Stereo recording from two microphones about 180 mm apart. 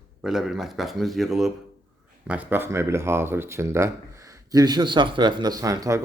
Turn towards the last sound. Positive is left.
turn(degrees=-20)  # may be behind; listen again after turning